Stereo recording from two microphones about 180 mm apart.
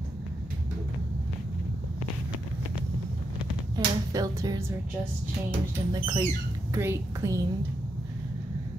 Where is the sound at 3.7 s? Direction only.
20° right (ahead or behind).